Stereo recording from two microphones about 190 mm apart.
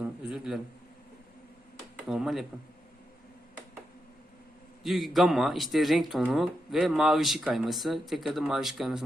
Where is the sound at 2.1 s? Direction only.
Centre (ahead or behind).